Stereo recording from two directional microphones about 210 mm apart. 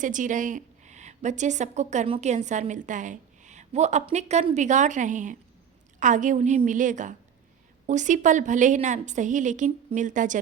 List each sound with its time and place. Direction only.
0.0 s a woman's voice: 40° right (ahead or behind)